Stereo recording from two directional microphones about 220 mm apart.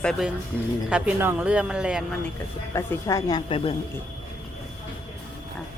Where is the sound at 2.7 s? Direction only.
15° left (ahead or behind).